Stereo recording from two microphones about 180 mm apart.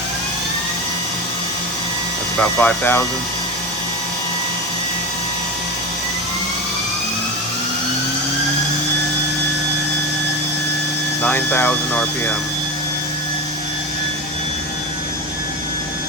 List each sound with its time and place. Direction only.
2.4 s speech: 10° left (ahead or behind)
11.2 s speech: 10° left (ahead or behind)